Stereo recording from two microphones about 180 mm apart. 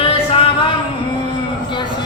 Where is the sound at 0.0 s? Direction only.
30° left (ahead or behind).